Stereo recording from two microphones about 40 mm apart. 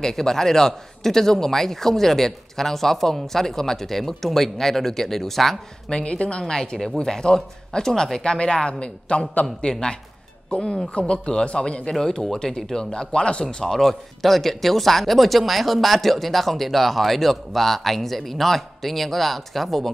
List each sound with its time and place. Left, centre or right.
0.0 s a man's voice: centre
5.9 s speech: left
6.4 s a man's voice: centre
11.9 s a man's voice: centre
13.7 s speech: centre